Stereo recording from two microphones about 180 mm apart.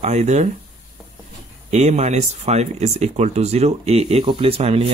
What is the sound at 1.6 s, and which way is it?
Speech, 35° right (ahead or behind).